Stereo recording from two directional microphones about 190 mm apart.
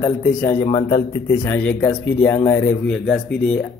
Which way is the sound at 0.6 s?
25° left (ahead or behind).